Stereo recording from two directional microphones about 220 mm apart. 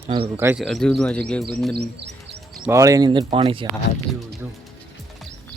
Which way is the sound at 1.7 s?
50° right (ahead or behind).